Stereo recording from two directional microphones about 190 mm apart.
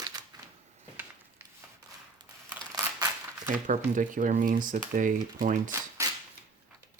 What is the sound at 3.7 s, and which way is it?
Speech, 45° right (ahead or behind).